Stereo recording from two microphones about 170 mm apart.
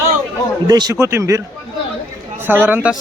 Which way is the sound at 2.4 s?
10° right (ahead or behind).